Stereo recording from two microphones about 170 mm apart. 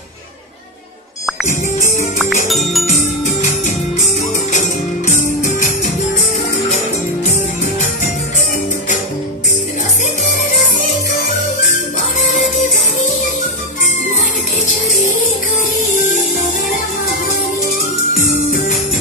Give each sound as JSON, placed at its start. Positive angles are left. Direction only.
{"t": 2.4, "sound": "music", "side_deg": 0}
{"t": 2.9, "sound": "music", "side_deg": 45}
{"t": 18.1, "sound": "music", "side_deg": 55}